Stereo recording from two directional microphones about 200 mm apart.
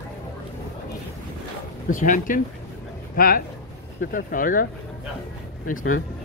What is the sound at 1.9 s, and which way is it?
Speech, 40° left (ahead or behind).